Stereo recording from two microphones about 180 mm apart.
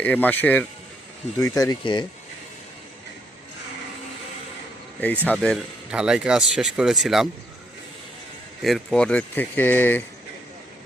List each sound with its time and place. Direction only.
0.0 s speech: 10° left (ahead or behind); by 2.0 s 25° left (ahead or behind)
4.9 s speech: 10° left (ahead or behind)
8.6 s speech: centre (ahead or behind)